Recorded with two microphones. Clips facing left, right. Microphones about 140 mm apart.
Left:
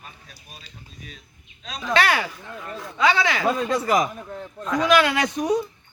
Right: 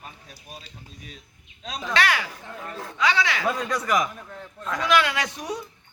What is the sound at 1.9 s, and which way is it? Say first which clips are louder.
A man's voice: left 3 dB; 35° left (ahead or behind).